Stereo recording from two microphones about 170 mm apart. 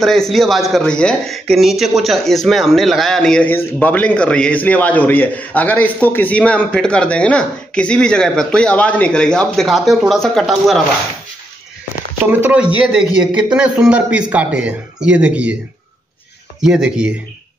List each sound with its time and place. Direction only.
0.0 s speech: centre (ahead or behind)
12.3 s a man's voice: 10° right (ahead or behind)
16.6 s speech: 5° right (ahead or behind)